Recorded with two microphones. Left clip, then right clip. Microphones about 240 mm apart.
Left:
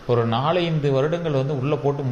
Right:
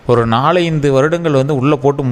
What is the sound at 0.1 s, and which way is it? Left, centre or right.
A man's voice, right.